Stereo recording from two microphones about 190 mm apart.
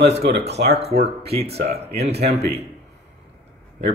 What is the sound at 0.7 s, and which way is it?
Speech, 30° right (ahead or behind).